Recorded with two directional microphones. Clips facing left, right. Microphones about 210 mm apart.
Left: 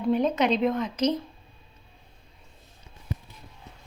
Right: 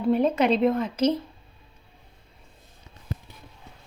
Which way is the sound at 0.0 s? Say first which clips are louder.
Right 2 dB; 5° right (ahead or behind).